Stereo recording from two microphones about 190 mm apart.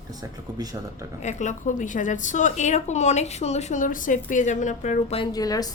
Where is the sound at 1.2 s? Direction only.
40° left (ahead or behind).